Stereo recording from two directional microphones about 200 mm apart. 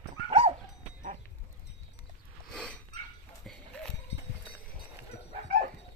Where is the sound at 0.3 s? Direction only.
30° right (ahead or behind).